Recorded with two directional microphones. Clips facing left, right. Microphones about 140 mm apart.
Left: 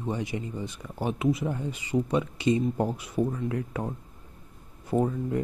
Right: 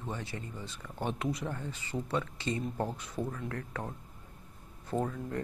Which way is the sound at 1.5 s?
15° left (ahead or behind).